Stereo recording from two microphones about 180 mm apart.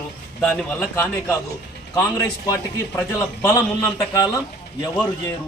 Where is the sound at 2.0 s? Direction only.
15° left (ahead or behind).